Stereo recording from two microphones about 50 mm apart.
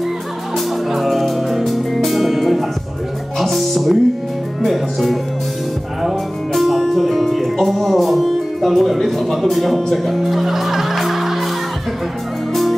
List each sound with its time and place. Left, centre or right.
0.9 s music: centre